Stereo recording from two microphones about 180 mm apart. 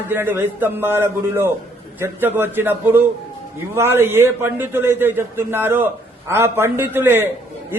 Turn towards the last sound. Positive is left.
turn(degrees=-10)  # may be behind; listen again after turning